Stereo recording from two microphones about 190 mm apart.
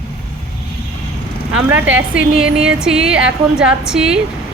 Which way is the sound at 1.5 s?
10° right (ahead or behind).